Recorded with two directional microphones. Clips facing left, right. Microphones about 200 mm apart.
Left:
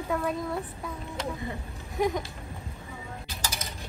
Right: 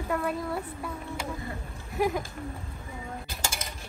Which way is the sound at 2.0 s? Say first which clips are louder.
Even; 5° right (ahead or behind).